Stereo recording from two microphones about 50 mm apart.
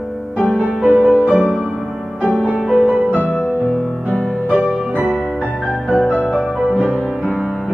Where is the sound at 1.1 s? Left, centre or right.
Right.